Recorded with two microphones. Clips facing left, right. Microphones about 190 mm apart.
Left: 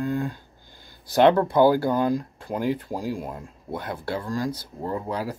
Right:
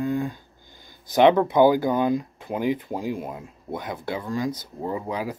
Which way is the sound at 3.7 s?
15° right (ahead or behind).